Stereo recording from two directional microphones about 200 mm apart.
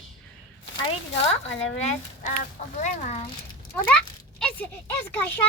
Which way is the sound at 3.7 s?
5° left (ahead or behind).